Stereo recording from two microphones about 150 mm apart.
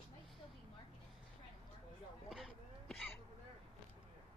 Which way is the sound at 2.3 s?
Centre (ahead or behind).